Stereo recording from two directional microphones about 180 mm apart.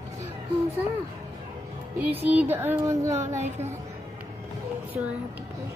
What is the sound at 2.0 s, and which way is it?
Speech, 10° right (ahead or behind).